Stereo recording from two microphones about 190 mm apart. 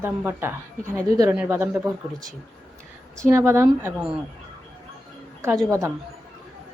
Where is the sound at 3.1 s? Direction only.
15° right (ahead or behind).